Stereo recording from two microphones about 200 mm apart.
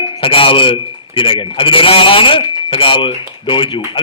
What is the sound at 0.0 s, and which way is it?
A man's voice, 25° left (ahead or behind).